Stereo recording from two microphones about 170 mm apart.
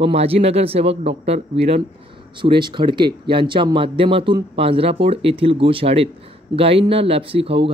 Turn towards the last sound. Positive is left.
turn(degrees=-35)  # may be behind; listen again after turning